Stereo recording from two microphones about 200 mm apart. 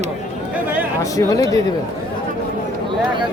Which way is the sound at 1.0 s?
15° left (ahead or behind).